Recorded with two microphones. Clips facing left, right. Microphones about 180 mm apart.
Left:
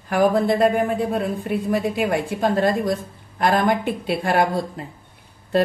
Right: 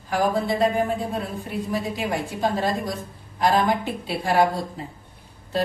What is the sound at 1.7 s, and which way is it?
A woman's voice, 55° left (ahead or behind).